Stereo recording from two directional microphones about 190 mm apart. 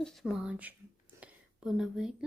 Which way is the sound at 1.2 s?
5° right (ahead or behind).